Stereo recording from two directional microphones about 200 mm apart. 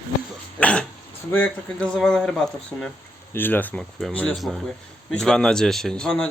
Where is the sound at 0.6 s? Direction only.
5° left (ahead or behind).